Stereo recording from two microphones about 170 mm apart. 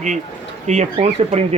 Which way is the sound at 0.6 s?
40° right (ahead or behind).